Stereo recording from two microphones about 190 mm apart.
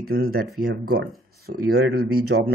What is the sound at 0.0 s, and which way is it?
Speech, 50° right (ahead or behind).